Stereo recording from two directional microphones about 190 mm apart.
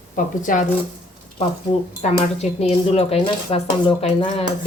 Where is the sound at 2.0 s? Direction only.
35° left (ahead or behind).